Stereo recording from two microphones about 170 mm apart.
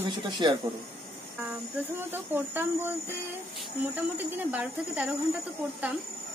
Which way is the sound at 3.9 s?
10° right (ahead or behind).